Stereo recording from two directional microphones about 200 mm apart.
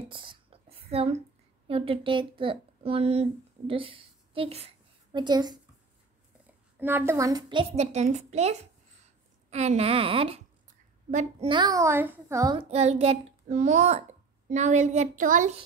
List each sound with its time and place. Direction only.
0.1 s a sound: 25° right (ahead or behind)
1.7 s speech: 30° right (ahead or behind)
6.8 s a woman's voice: 10° right (ahead or behind); by 11.4 s 35° right (ahead or behind)
11.4 s a child's voice: 20° right (ahead or behind)
12.5 s a woman's voice: 30° right (ahead or behind)